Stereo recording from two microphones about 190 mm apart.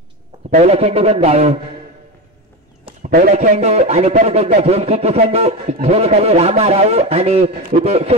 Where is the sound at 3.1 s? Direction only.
40° right (ahead or behind).